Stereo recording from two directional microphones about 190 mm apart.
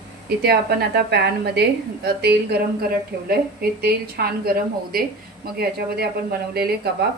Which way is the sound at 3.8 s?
55° right (ahead or behind).